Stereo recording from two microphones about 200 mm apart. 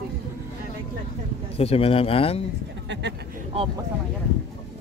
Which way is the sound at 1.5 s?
30° left (ahead or behind).